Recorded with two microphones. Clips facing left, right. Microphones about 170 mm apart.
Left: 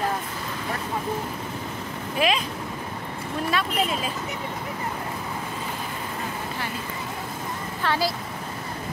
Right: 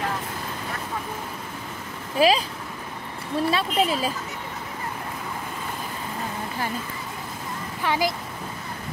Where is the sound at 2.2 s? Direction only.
35° right (ahead or behind).